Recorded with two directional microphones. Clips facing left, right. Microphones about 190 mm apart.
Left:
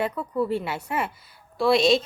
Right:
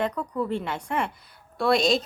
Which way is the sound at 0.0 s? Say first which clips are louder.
Left 2 dB; 5° left (ahead or behind).